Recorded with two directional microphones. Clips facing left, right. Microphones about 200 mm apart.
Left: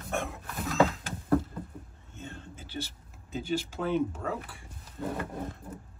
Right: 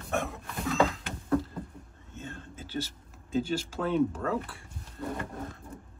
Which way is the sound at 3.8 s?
10° left (ahead or behind).